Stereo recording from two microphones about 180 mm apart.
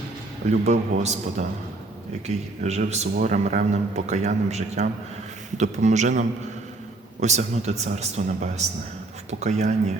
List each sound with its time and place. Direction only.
0.6 s a man's voice: 40° right (ahead or behind)